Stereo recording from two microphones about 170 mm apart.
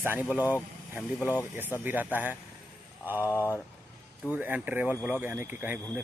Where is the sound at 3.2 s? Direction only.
15° left (ahead or behind).